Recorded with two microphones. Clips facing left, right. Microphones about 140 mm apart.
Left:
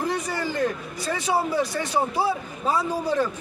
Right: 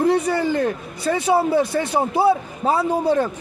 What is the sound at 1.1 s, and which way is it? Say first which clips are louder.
Speech: right 8 dB; 50° right (ahead or behind).